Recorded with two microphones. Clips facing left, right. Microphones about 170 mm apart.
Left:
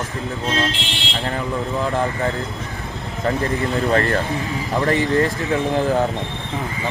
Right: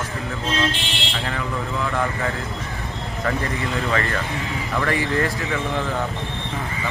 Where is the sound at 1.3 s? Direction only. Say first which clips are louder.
Left 5 dB; 35° left (ahead or behind).